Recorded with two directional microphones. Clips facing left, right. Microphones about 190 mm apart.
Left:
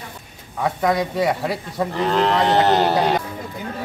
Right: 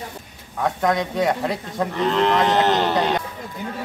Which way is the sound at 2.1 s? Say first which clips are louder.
Left 1 dB; 35° left (ahead or behind).